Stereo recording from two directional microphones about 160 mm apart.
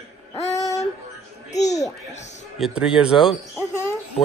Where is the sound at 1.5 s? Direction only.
45° left (ahead or behind).